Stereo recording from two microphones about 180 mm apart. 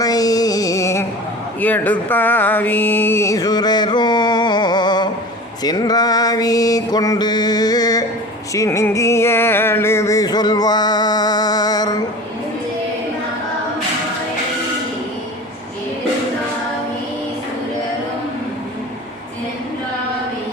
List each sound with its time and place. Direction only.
0.0 s music: 20° left (ahead or behind)
5.6 s mantra: 20° left (ahead or behind)
8.5 s music: 15° left (ahead or behind)